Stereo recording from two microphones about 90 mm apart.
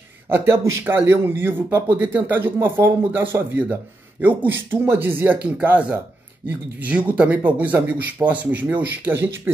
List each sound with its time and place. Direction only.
0.3 s speech: 25° right (ahead or behind)